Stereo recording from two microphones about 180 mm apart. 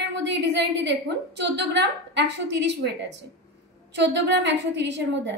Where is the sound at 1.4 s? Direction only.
75° right (ahead or behind).